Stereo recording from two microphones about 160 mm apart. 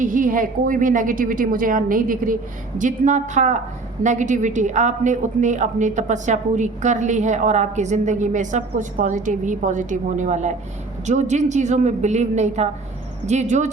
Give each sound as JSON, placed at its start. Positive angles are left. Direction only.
{"t": 0.0, "sound": "a woman's voice", "side_deg": -55}